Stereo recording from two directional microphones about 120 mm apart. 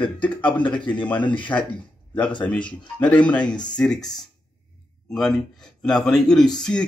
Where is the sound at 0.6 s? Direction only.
45° left (ahead or behind).